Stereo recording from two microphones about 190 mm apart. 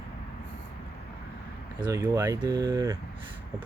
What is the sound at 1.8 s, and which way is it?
Speech, 20° right (ahead or behind).